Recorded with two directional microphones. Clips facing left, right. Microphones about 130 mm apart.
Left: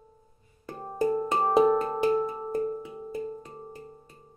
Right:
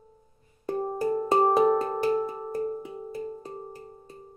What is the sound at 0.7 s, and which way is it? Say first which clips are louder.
Music: even; 10° right (ahead or behind).